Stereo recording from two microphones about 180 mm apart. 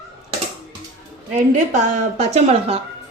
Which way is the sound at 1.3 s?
45° right (ahead or behind).